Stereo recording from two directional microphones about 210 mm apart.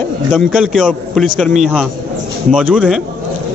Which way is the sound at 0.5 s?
5° right (ahead or behind).